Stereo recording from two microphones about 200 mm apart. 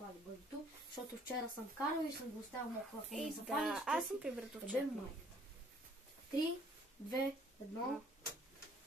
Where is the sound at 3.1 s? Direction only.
Centre (ahead or behind).